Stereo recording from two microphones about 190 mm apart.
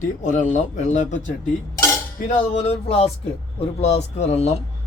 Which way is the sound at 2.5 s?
30° left (ahead or behind).